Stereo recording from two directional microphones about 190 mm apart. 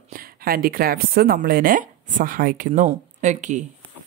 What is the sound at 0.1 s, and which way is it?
Speech, 50° right (ahead or behind).